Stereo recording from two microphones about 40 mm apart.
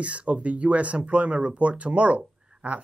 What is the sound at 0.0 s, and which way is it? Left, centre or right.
Speech, right.